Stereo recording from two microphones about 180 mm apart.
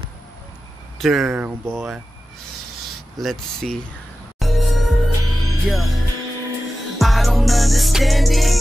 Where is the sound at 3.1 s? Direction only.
Centre (ahead or behind).